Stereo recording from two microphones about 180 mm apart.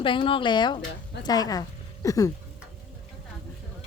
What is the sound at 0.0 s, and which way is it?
Speech, 30° left (ahead or behind).